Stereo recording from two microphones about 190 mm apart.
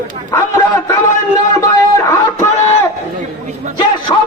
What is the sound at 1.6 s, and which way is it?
Music, 15° left (ahead or behind).